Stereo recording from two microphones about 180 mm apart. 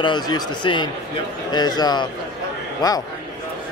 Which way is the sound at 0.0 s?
25° left (ahead or behind).